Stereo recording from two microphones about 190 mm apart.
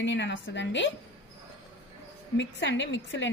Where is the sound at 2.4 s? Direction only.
70° left (ahead or behind).